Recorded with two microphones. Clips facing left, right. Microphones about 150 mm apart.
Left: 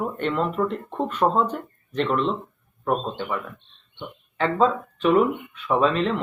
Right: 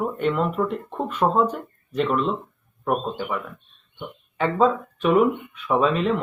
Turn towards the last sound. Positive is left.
turn(degrees=-5)  # may be behind; listen again after turning